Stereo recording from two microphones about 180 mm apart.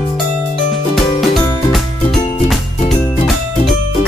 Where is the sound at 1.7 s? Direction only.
Centre (ahead or behind).